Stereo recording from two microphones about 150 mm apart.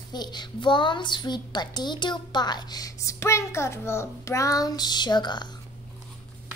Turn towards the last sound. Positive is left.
turn(degrees=30)  # may be behind; listen again after turning